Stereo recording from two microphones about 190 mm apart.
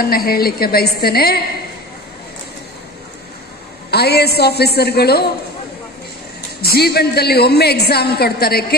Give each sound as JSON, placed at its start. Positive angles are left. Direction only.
{"t": 0.0, "sound": "a woman's voice", "side_deg": 55}
{"t": 3.9, "sound": "a woman's voice", "side_deg": 60}
{"t": 6.6, "sound": "a woman's voice", "side_deg": 55}